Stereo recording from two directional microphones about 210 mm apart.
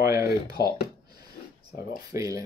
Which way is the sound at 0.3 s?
50° left (ahead or behind).